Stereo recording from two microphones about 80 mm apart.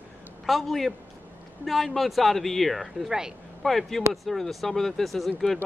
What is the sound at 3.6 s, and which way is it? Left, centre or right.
Speech, centre.